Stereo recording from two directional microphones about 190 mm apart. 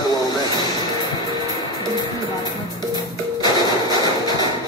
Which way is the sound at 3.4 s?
20° left (ahead or behind).